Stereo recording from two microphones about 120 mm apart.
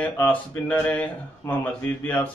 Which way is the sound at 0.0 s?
10° left (ahead or behind).